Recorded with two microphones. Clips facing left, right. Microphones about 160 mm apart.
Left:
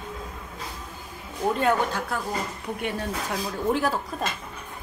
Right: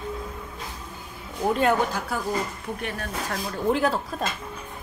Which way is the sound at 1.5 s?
5° right (ahead or behind).